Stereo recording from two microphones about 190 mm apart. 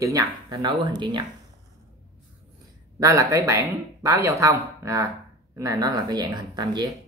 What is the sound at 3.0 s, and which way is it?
Speech, 15° right (ahead or behind).